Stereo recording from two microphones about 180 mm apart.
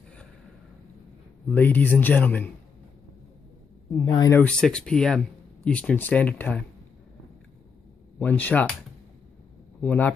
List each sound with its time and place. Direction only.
1.5 s speech: 10° left (ahead or behind)
3.9 s speech: 20° left (ahead or behind)
4.3 s speech: 10° left (ahead or behind)
8.2 s speech: 10° left (ahead or behind)
9.8 s speech: 10° left (ahead or behind)